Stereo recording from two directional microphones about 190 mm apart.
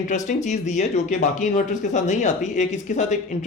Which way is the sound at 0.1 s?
40° left (ahead or behind).